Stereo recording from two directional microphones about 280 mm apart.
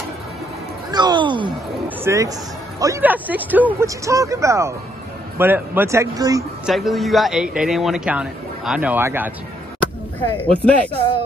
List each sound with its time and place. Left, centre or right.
0.9 s a sound: centre
2.0 s speech: centre
6.7 s a man's voice: centre
10.3 s a man's voice: centre